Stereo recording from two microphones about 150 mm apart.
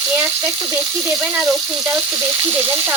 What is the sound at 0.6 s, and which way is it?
Stir, 20° right (ahead or behind).